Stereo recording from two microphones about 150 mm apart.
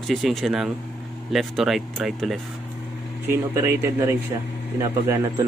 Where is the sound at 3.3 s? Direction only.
15° right (ahead or behind).